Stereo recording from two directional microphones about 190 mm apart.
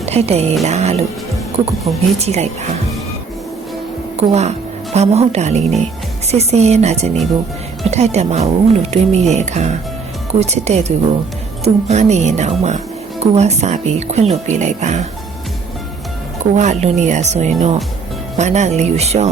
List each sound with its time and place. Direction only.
0.0 s speech: 35° right (ahead or behind)
1.8 s speech: centre (ahead or behind)
2.1 s speech: 35° right (ahead or behind)
4.2 s speech: 35° right (ahead or behind)
16.6 s speech: 40° right (ahead or behind)